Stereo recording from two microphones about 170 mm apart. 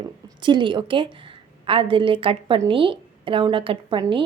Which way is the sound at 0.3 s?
25° right (ahead or behind).